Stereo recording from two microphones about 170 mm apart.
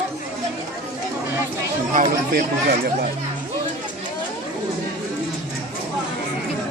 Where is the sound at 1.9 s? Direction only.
55° right (ahead or behind).